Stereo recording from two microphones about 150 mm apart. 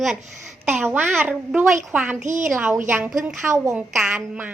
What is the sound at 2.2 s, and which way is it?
Speech, 55° right (ahead or behind).